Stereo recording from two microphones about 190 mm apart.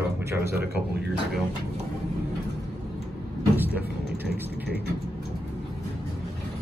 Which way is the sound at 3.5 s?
10° right (ahead or behind).